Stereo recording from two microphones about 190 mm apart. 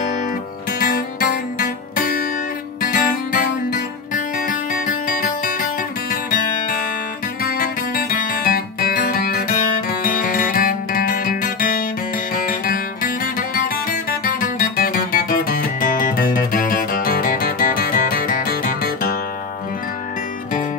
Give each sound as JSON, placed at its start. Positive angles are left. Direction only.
{"t": 0.7, "sound": "music", "side_deg": 50}
{"t": 7.4, "sound": "guitar", "side_deg": 50}
{"t": 12.4, "sound": "music", "side_deg": 45}